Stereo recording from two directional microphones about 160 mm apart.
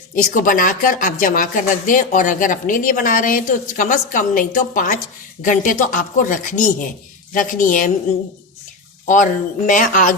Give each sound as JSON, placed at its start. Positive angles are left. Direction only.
{"t": 0.3, "sound": "speech", "side_deg": 60}
{"t": 9.0, "sound": "speech", "side_deg": 55}